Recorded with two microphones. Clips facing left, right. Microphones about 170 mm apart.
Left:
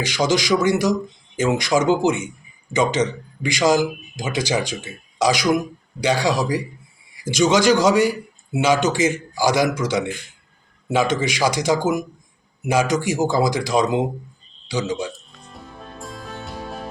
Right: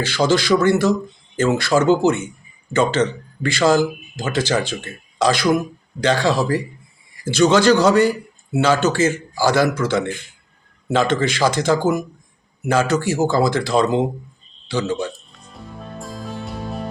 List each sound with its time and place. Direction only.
0.0 s speech: 10° left (ahead or behind)
15.5 s music: centre (ahead or behind)